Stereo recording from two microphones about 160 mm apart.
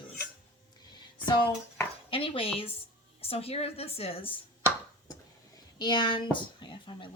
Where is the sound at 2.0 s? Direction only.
35° left (ahead or behind).